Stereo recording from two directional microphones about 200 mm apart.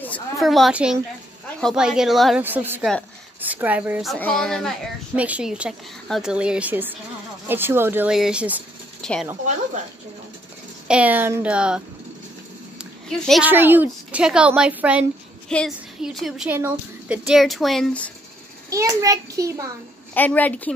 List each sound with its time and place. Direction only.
0.0 s a woman's voice: 5° left (ahead or behind)
10.9 s a woman's voice: 5° right (ahead or behind)
12.7 s a sound: centre (ahead or behind)
13.5 s a woman's voice: 10° right (ahead or behind)
17.3 s speech: centre (ahead or behind)
18.7 s a woman's voice: 15° right (ahead or behind)
20.2 s a woman's voice: 10° left (ahead or behind)